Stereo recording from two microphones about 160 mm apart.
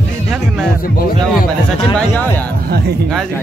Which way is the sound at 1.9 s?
10° left (ahead or behind).